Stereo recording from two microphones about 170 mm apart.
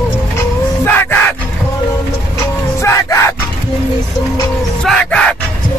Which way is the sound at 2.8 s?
15° left (ahead or behind).